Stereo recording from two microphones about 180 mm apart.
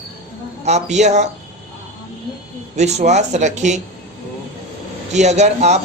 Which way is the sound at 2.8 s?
40° right (ahead or behind).